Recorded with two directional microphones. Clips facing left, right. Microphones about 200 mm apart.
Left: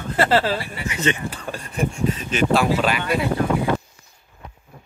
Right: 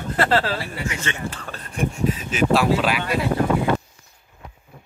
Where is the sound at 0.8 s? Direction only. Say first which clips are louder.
Left 4 dB; 15° left (ahead or behind).